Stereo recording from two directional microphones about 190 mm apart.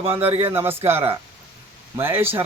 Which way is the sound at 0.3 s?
30° right (ahead or behind).